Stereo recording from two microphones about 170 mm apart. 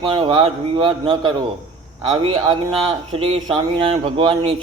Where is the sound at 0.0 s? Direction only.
30° right (ahead or behind).